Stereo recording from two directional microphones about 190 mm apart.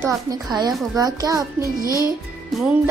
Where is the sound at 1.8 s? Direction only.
20° left (ahead or behind).